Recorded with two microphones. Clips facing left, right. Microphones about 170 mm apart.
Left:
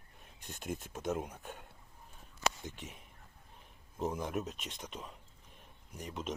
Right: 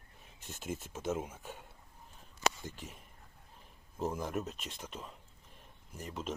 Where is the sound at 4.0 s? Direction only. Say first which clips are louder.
Even; centre (ahead or behind).